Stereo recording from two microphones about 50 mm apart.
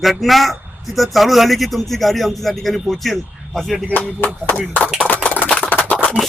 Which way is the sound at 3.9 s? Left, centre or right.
Left.